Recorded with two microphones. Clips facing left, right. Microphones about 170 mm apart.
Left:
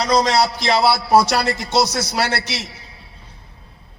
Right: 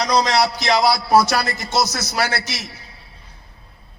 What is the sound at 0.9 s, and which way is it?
A man's voice, 30° left (ahead or behind).